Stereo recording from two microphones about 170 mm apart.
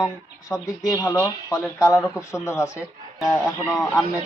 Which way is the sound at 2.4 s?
15° left (ahead or behind).